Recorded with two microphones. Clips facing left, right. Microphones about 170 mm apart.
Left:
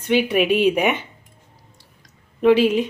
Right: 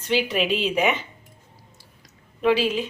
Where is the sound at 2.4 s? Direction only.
60° left (ahead or behind).